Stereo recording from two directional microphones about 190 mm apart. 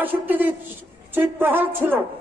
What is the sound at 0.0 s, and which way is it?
A woman's voice, 10° right (ahead or behind).